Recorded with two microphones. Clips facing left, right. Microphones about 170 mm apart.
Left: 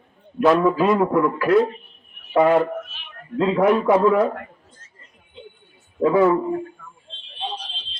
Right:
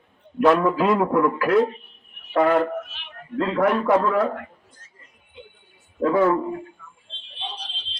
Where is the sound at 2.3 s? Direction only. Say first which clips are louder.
Left 2 dB; 10° left (ahead or behind).